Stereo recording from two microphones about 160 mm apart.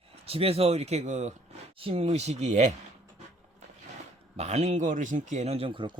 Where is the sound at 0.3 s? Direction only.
35° right (ahead or behind).